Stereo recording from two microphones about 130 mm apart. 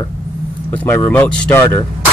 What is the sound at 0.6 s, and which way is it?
Speech, 15° left (ahead or behind).